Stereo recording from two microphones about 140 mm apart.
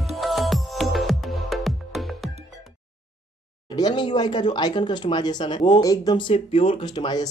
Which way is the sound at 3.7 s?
30° left (ahead or behind).